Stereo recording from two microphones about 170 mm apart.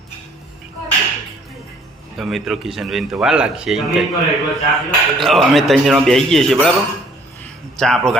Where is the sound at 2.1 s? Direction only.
Centre (ahead or behind).